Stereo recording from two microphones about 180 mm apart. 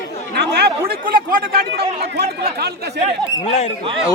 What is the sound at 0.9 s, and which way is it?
Speech, 55° right (ahead or behind).